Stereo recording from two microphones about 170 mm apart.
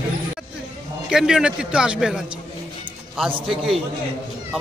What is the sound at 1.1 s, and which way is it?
Speech, 5° right (ahead or behind).